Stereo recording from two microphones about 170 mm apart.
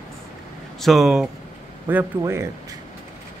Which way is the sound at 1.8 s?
15° right (ahead or behind).